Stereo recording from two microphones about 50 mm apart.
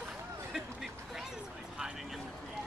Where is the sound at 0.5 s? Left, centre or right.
Centre.